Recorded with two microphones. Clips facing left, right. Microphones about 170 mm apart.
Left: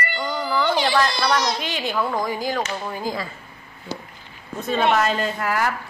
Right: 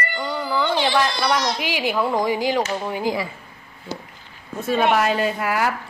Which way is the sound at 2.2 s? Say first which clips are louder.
Right 4 dB; 90° right.